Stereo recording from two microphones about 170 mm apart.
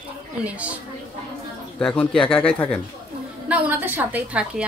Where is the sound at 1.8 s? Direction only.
5° left (ahead or behind).